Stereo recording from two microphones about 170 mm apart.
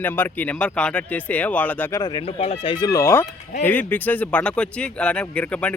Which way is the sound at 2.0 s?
25° left (ahead or behind).